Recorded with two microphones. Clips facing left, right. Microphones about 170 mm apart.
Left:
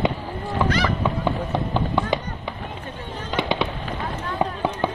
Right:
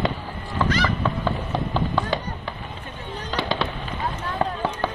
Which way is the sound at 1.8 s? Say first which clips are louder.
Left 1 dB; 20° left (ahead or behind).